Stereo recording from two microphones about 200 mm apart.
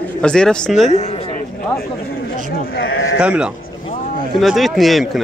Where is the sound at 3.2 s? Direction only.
5° right (ahead or behind).